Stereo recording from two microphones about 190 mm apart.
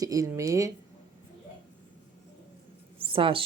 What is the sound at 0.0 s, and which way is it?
Speech, 20° right (ahead or behind).